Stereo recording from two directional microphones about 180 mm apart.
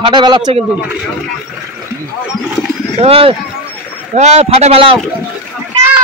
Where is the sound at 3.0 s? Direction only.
30° right (ahead or behind).